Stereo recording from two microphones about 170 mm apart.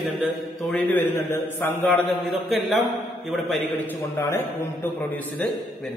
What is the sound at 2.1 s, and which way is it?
A man's voice, centre (ahead or behind).